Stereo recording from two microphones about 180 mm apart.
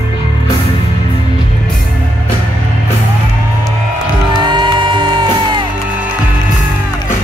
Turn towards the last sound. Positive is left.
turn(degrees=-25)  # may be behind; listen again after turning